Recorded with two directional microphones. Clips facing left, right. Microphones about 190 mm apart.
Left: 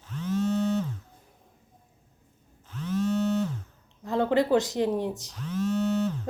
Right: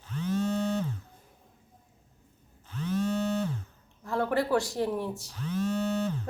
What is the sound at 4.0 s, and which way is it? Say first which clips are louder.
A woman's voice: left 4 dB; 20° left (ahead or behind).